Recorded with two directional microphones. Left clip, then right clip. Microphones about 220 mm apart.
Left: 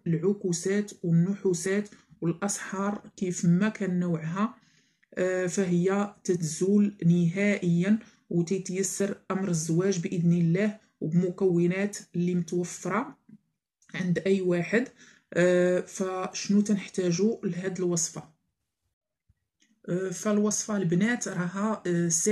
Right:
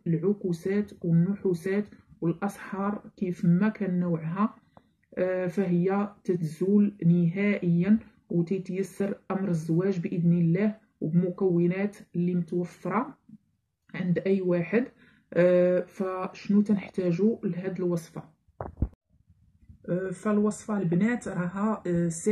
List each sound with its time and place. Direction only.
0.0 s speech: 15° left (ahead or behind)
19.9 s speech: 20° left (ahead or behind)